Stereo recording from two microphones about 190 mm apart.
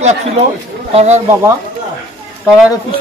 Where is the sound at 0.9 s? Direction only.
35° right (ahead or behind).